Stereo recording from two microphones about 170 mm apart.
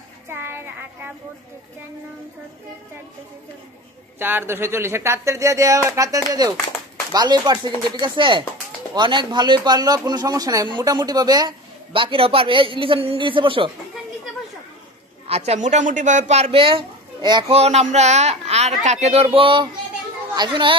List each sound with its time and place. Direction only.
0.3 s child singing: 10° right (ahead or behind)
4.2 s speech: 15° right (ahead or behind); by 13.7 s 30° right (ahead or behind)
15.2 s speech: 40° right (ahead or behind)